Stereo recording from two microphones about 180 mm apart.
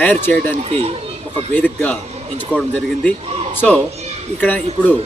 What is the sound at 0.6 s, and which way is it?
Speech, 35° right (ahead or behind).